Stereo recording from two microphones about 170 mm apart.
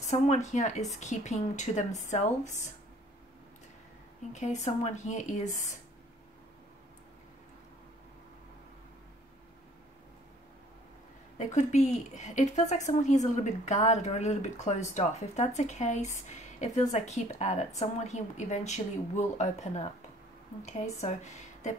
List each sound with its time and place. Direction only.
0.0 s a woman's voice: 45° left (ahead or behind)
4.3 s a woman's voice: 45° left (ahead or behind)
11.3 s a woman's voice: 45° left (ahead or behind)